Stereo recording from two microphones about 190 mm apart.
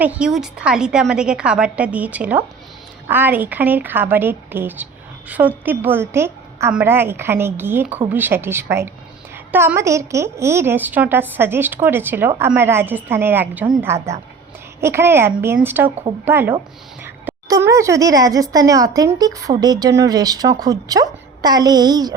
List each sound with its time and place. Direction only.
0.0 s a woman's voice: 5° right (ahead or behind)